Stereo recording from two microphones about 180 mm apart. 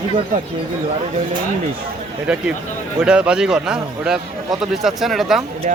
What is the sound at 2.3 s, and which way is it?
Speech, 5° right (ahead or behind).